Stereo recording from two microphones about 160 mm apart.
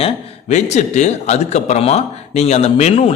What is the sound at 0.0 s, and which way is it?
A man's voice, 45° left (ahead or behind).